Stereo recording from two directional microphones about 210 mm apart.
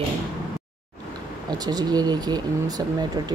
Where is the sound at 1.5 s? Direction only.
20° right (ahead or behind).